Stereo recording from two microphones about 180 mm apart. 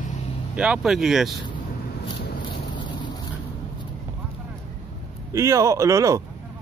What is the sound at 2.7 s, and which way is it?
Boat, 25° left (ahead or behind).